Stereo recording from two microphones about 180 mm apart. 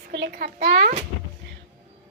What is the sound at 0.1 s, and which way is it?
Speech, 60° right (ahead or behind).